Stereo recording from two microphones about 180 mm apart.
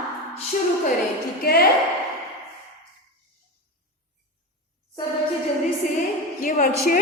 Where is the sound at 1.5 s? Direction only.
55° left (ahead or behind).